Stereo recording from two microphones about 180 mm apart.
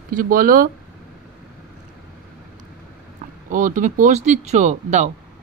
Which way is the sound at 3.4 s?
45° right (ahead or behind).